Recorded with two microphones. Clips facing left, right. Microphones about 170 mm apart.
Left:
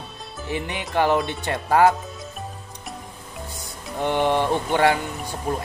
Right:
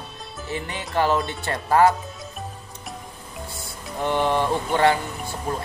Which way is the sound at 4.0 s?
20° left (ahead or behind).